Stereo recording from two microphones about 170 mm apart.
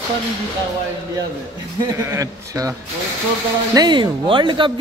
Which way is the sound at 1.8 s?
20° right (ahead or behind).